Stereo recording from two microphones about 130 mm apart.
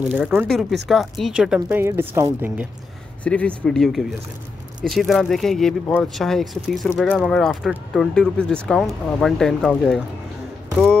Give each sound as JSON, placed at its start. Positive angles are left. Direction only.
{"t": 0.1, "sound": "speech", "side_deg": -15}
{"t": 0.5, "sound": "speech", "side_deg": 0}
{"t": 1.8, "sound": "speech", "side_deg": -20}
{"t": 3.3, "sound": "speech", "side_deg": 10}